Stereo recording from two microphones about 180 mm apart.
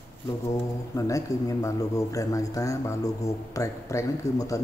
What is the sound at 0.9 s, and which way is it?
A man's voice, 15° left (ahead or behind).